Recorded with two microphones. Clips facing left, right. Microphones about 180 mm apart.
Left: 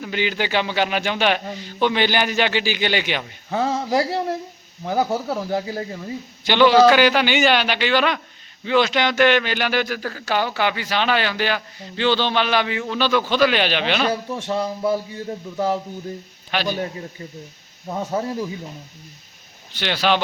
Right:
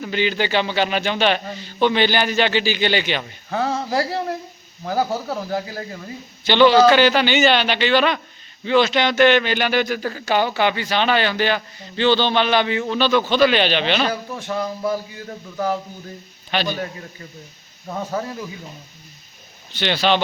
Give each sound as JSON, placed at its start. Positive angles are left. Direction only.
{"t": 0.0, "sound": "a man's voice", "side_deg": 10}
{"t": 3.5, "sound": "a man's voice", "side_deg": 20}
{"t": 5.5, "sound": "a man's voice", "side_deg": 25}
{"t": 6.4, "sound": "a man's voice", "side_deg": 10}
{"t": 14.1, "sound": "a man's voice", "side_deg": 25}
{"t": 16.5, "sound": "a man's voice", "side_deg": 10}
{"t": 16.7, "sound": "a man's voice", "side_deg": 25}
{"t": 19.7, "sound": "a man's voice", "side_deg": 10}